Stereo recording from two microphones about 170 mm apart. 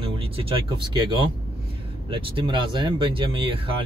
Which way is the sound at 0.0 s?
30° right (ahead or behind).